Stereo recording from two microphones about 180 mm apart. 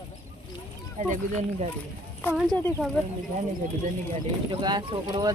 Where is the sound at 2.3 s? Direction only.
Centre (ahead or behind).